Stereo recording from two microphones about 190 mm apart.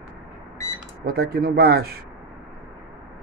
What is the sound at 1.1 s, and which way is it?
Speech, 55° right (ahead or behind).